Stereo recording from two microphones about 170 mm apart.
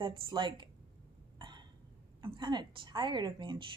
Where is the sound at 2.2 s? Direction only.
30° right (ahead or behind).